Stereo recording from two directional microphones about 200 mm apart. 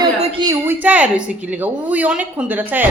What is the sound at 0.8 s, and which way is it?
A woman's voice, 5° right (ahead or behind).